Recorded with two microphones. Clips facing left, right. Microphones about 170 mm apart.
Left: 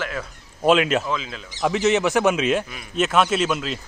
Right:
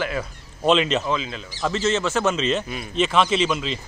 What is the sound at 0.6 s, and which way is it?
Speech, 5° left (ahead or behind).